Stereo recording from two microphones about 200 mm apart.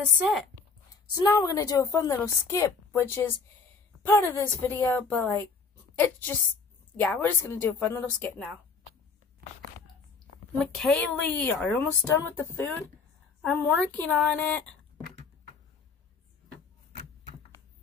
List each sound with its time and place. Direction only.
1.1 s a woman's voice: 20° left (ahead or behind)
10.6 s a woman's voice: 5° left (ahead or behind)